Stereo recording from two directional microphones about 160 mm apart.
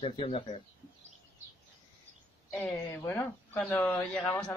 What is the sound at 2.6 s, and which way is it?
Speech, 15° left (ahead or behind).